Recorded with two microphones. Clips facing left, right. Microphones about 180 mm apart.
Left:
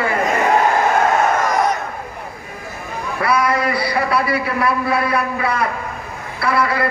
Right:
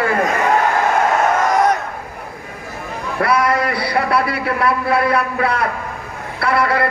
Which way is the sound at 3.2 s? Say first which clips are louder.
Right 1 dB; 60° right (ahead or behind).